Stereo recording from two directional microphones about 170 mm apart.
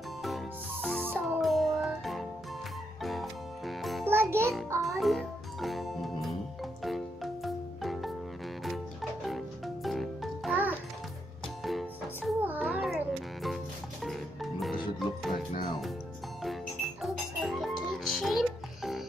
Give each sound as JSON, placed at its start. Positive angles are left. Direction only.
{"t": 0.2, "sound": "music", "side_deg": 0}
{"t": 4.0, "sound": "music", "side_deg": -15}
{"t": 4.8, "sound": "music", "side_deg": 0}
{"t": 17.0, "sound": "music", "side_deg": 0}